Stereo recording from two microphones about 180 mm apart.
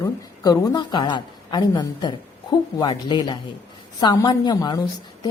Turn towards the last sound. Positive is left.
turn(degrees=20)  # may be behind; listen again after turning